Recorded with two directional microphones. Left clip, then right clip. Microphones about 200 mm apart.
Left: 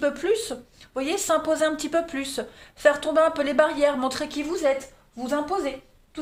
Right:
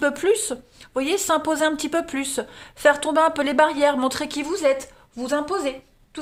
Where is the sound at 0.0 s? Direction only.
45° right (ahead or behind).